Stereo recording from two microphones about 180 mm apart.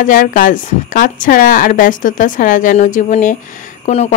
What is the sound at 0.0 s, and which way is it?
A woman's voice, 50° left (ahead or behind).